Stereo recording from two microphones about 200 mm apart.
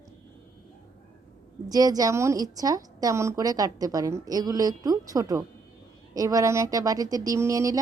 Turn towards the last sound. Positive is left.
turn(degrees=-15)  # may be behind; listen again after turning